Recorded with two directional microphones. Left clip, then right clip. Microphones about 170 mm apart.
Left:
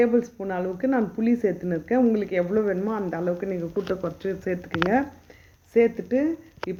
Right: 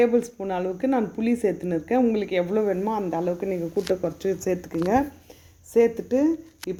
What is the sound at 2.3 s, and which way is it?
Speech, 15° right (ahead or behind).